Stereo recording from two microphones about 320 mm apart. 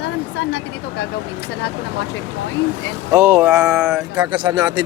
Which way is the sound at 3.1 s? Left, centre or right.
Centre.